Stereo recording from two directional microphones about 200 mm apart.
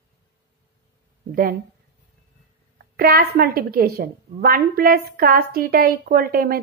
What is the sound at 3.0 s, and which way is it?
A woman's voice, 50° right (ahead or behind).